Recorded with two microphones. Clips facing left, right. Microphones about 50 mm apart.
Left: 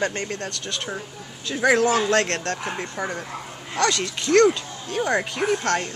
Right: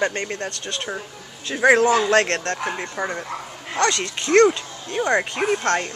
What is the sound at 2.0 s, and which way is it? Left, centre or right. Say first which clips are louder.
Speech: right 3 dB; centre.